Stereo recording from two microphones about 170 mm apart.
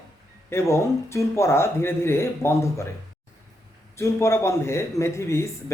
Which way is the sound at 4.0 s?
15° left (ahead or behind).